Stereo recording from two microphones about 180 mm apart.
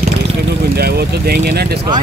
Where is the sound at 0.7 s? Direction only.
60° right (ahead or behind).